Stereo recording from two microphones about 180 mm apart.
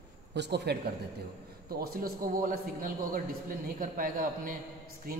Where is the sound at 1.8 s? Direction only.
55° right (ahead or behind).